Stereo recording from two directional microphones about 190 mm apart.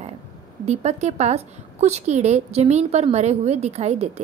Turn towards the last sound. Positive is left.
turn(degrees=-35)  # may be behind; listen again after turning